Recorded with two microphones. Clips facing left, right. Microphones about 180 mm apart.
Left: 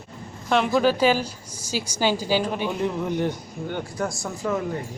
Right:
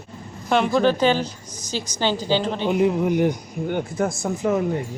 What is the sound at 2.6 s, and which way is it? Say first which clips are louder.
Speech: right 6 dB; 15° right (ahead or behind).